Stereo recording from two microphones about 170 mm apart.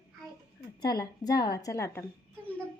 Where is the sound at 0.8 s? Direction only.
25° left (ahead or behind).